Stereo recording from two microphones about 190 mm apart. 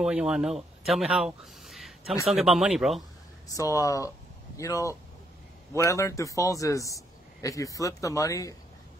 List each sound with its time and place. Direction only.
0.0 s speech: 5° right (ahead or behind)
3.5 s a man's voice: 15° left (ahead or behind)